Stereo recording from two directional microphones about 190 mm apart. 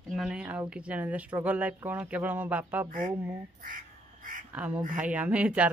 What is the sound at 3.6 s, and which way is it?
Duck, 45° right (ahead or behind).